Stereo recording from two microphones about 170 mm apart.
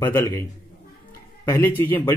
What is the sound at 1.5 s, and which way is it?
Speech, 10° left (ahead or behind).